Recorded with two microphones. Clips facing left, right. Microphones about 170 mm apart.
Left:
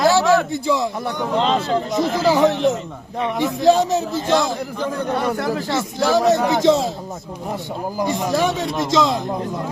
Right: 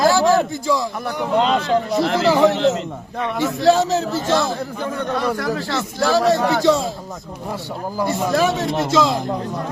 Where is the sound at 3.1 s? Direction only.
20° left (ahead or behind).